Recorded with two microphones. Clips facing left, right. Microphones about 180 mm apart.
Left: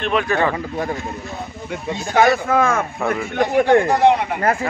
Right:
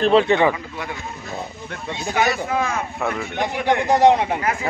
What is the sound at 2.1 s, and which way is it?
Speech, 50° left (ahead or behind).